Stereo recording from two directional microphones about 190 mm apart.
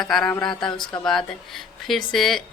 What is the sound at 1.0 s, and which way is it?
Speech, centre (ahead or behind).